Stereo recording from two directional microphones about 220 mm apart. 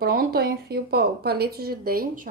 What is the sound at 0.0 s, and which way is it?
A woman's voice, 45° right (ahead or behind).